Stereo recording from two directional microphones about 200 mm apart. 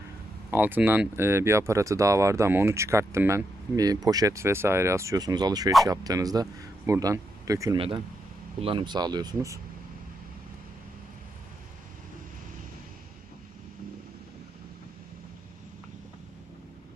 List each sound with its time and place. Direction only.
0.5 s speech: 10° right (ahead or behind)